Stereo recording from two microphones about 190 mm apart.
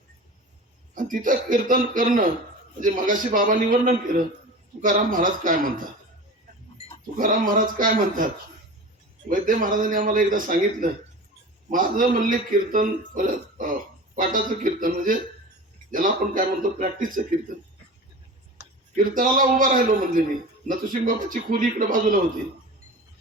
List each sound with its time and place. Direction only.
0.9 s a man's voice: 45° right (ahead or behind)
7.2 s a man's voice: 45° right (ahead or behind)
9.3 s a man's voice: 45° right (ahead or behind)
18.9 s a man's voice: 45° right (ahead or behind)